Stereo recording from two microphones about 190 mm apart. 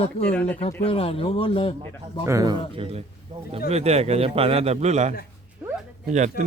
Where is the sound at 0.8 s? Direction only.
30° left (ahead or behind).